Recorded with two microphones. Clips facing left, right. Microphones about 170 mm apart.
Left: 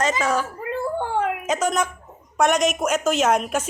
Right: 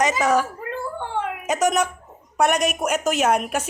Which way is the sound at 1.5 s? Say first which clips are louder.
Right 2 dB; 15° right (ahead or behind).